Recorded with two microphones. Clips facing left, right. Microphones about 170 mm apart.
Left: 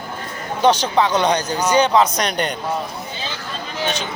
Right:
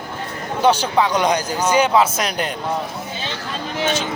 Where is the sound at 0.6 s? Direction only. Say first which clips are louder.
Even; 10° right (ahead or behind).